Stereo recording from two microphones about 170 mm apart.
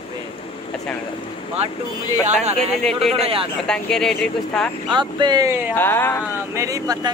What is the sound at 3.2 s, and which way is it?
Speech, 35° right (ahead or behind).